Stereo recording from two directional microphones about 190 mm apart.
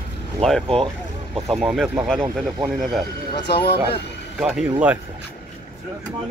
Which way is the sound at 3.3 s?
65° left (ahead or behind).